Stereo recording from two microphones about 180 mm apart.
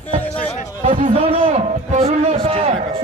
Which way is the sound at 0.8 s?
35° right (ahead or behind).